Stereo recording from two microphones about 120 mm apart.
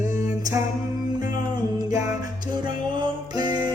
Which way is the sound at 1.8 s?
30° right (ahead or behind).